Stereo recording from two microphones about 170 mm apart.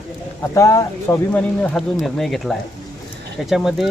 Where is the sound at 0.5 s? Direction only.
20° left (ahead or behind).